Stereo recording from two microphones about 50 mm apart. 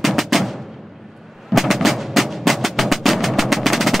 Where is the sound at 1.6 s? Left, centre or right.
Centre.